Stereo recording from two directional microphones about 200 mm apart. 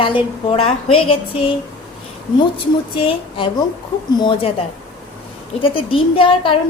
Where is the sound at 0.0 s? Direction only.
25° left (ahead or behind).